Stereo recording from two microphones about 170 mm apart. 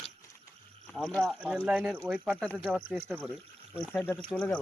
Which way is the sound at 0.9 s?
5° left (ahead or behind).